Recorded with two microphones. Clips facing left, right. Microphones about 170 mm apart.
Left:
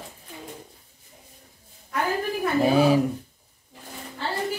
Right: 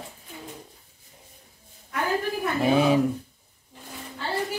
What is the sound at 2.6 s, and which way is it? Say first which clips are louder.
Speech: left 2 dB; 35° left (ahead or behind).